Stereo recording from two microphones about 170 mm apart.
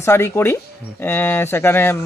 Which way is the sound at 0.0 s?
15° left (ahead or behind).